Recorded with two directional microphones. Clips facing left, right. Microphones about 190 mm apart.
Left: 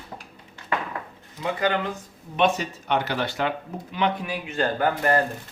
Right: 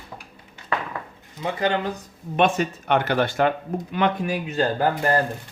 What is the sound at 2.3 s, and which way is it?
Speech, 55° right (ahead or behind).